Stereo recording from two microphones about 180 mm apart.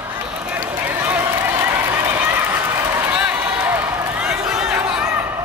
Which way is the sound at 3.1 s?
5° right (ahead or behind).